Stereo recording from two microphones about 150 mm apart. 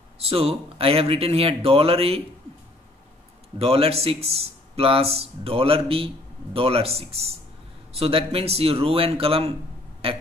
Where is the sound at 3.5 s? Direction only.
40° right (ahead or behind).